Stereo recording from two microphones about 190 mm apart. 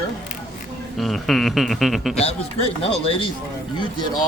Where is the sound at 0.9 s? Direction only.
Centre (ahead or behind).